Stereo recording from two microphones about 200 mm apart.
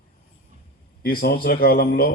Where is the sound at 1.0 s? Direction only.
50° left (ahead or behind).